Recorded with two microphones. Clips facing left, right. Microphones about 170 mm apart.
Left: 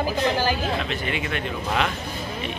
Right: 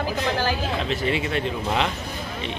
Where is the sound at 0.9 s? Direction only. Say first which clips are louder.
Right 3 dB; 30° right (ahead or behind).